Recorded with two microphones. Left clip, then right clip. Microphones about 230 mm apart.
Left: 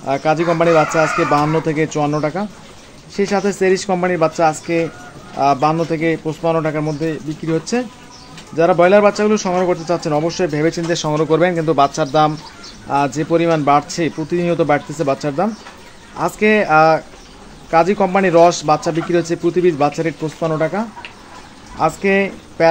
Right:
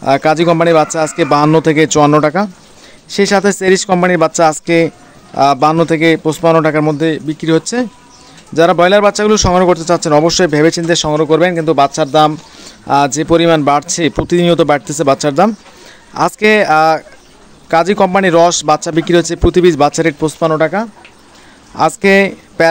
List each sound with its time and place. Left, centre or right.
0.0 s speech: right